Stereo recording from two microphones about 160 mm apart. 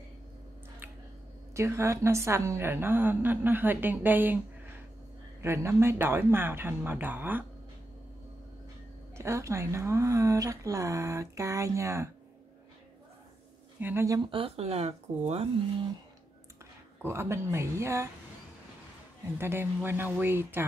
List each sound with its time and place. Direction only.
1.5 s a woman's voice: 15° right (ahead or behind)
5.4 s a woman's voice: 15° right (ahead or behind)
9.1 s speech: 15° right (ahead or behind)
13.7 s a woman's voice: 15° right (ahead or behind)
14.3 s speech: 35° right (ahead or behind)
17.0 s a woman's voice: 15° right (ahead or behind)
19.3 s a woman's voice: 15° right (ahead or behind)